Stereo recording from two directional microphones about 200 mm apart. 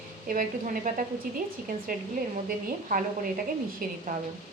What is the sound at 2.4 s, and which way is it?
A woman's voice, 45° right (ahead or behind).